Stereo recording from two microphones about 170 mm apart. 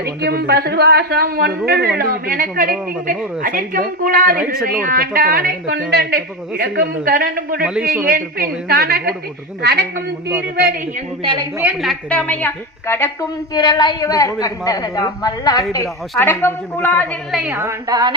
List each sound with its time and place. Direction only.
0.0 s a woman's voice: 70° right (ahead or behind)
7.6 s a man's voice: 5° right (ahead or behind)
8.1 s a woman's voice: 65° right (ahead or behind)
9.6 s a man's voice: 80° right
11.2 s a woman's voice: 30° right (ahead or behind)
11.6 s a woman's voice: centre (ahead or behind)
13.5 s a woman's voice: 25° left (ahead or behind)
17.3 s a woman's voice: 10° right (ahead or behind)